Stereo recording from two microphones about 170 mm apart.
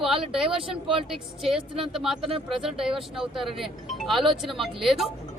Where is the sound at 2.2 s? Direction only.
30° right (ahead or behind).